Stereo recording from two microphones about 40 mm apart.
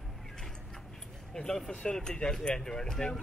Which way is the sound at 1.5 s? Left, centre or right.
Centre.